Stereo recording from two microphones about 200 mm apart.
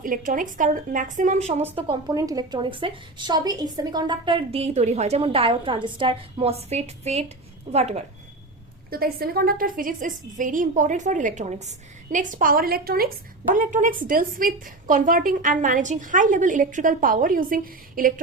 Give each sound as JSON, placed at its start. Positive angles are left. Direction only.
{"t": 0.0, "sound": "a woman's voice", "side_deg": -40}
{"t": 1.7, "sound": "a woman's voice", "side_deg": -20}
{"t": 8.9, "sound": "a woman's voice", "side_deg": -50}